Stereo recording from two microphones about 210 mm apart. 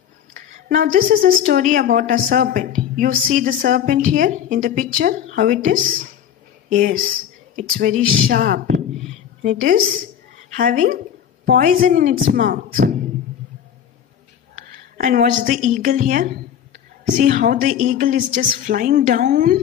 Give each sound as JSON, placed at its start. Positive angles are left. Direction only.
{"t": 0.5, "sound": "a woman's voice", "side_deg": -40}
{"t": 15.0, "sound": "a woman's voice", "side_deg": -40}